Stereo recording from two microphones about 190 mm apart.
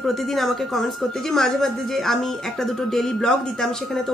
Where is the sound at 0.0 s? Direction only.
Centre (ahead or behind).